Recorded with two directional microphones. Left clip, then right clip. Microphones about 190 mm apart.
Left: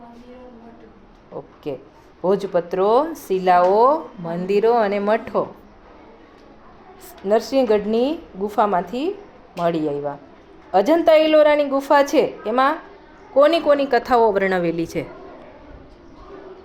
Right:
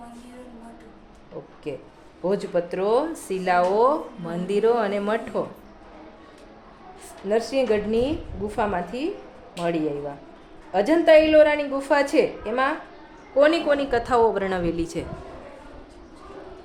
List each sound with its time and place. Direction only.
1.3 s speech: 20° left (ahead or behind)
7.3 s speech: 15° left (ahead or behind)